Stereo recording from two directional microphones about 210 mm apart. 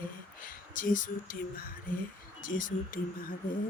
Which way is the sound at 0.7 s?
40° left (ahead or behind).